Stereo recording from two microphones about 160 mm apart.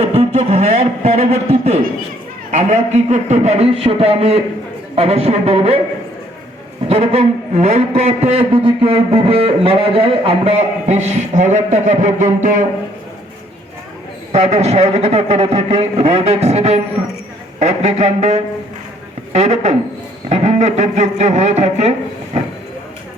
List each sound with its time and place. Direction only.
0.0 s a sound: 40° right (ahead or behind)
2.5 s a man's voice: 45° right (ahead or behind)
6.8 s a man's voice: 40° right (ahead or behind)
14.3 s a man's voice: 45° right (ahead or behind)